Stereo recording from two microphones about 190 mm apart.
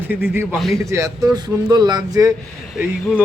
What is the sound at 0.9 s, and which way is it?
Speech, 15° right (ahead or behind).